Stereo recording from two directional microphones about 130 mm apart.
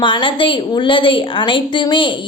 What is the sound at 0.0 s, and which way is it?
A woman's voice, 40° left (ahead or behind).